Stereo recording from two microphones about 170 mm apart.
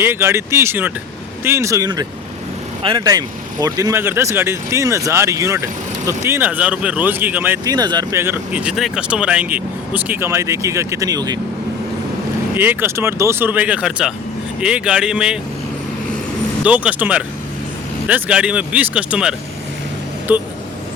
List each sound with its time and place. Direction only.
0.0 s speech: 15° right (ahead or behind)
12.5 s speech: 10° right (ahead or behind)
16.6 s speech: 10° right (ahead or behind)